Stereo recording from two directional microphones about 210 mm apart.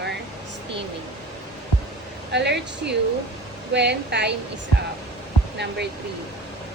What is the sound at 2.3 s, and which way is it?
Speech, 55° right (ahead or behind).